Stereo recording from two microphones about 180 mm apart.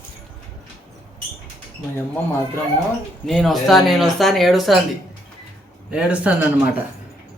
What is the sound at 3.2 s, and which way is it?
Speech, centre (ahead or behind).